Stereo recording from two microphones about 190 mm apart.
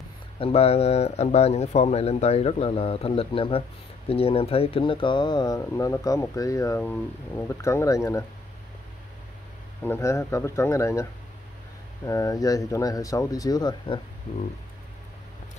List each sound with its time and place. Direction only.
0.4 s speech: 30° left (ahead or behind); by 8.3 s 15° left (ahead or behind)
9.8 s speech: 15° left (ahead or behind)
12.1 s speech: 20° left (ahead or behind)